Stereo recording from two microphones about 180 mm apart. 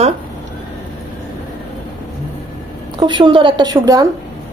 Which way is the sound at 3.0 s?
25° right (ahead or behind).